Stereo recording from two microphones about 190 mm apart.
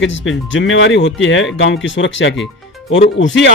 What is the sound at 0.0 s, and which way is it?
Speech, 85° left.